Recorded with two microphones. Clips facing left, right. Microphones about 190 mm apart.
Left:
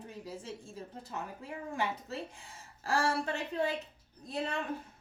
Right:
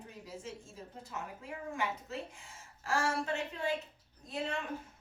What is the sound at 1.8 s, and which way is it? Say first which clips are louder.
A child's voice: left 3 dB; 35° left (ahead or behind).